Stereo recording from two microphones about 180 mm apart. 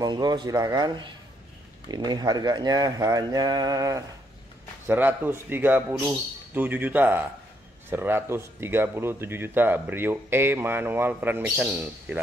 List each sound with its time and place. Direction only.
0.0 s speech: 20° right (ahead or behind)